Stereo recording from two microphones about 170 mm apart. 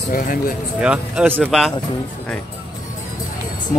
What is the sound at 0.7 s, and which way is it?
Speech, 5° right (ahead or behind).